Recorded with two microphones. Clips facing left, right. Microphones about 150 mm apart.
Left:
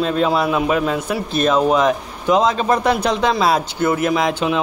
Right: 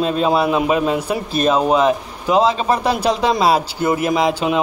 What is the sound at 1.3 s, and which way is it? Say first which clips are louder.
Speech: even; 35° right (ahead or behind).